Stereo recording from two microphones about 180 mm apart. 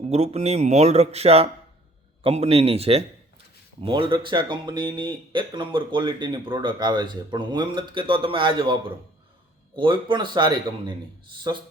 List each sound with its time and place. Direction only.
0.1 s speech: 35° right (ahead or behind)